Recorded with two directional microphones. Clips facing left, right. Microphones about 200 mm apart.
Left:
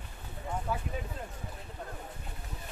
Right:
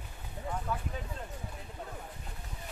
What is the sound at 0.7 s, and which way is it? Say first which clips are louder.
Speech: left 2 dB; 10° left (ahead or behind).